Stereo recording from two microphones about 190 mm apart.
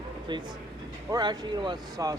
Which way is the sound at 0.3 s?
25° right (ahead or behind).